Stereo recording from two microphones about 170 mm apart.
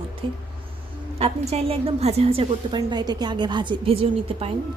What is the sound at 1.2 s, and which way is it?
A woman's voice, 40° right (ahead or behind).